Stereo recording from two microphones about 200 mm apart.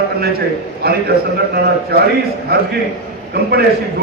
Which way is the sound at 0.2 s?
50° right (ahead or behind).